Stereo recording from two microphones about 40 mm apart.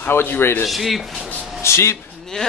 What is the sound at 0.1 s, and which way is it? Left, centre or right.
Speech, left.